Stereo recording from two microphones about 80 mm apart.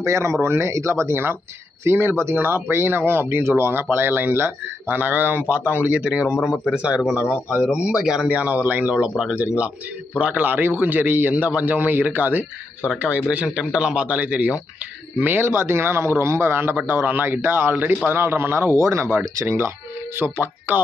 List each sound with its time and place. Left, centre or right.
0.0 s a man's voice: right